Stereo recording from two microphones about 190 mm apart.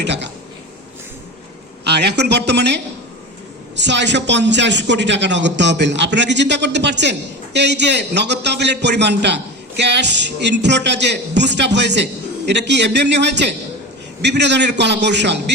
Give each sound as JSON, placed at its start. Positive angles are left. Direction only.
{"t": 0.0, "sound": "speech", "side_deg": -65}
{"t": 1.8, "sound": "speech", "side_deg": -60}